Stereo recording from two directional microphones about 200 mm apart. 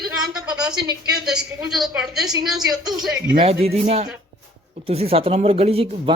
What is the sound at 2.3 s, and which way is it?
Speech, 20° right (ahead or behind).